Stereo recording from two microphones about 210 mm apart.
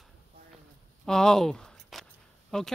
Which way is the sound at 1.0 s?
5° left (ahead or behind).